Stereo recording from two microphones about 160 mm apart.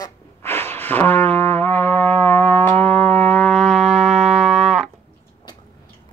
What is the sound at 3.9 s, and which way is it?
Music, 45° right (ahead or behind).